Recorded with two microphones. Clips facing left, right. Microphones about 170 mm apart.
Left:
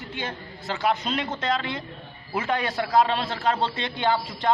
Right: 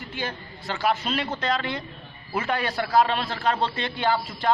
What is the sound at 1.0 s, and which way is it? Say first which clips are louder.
Speech: even; 20° left (ahead or behind).